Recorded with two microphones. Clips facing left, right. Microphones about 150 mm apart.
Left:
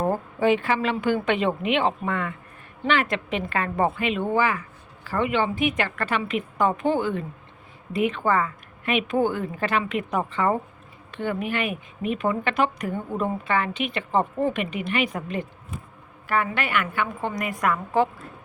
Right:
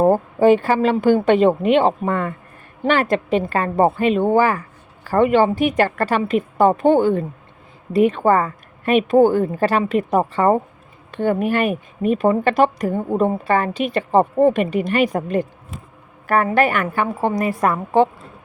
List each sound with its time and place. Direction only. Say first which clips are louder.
0.0 s a woman's voice: right 9 dB; 40° right (ahead or behind)